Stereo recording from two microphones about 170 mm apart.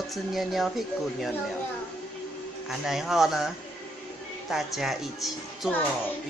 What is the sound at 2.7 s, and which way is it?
Speech, centre (ahead or behind).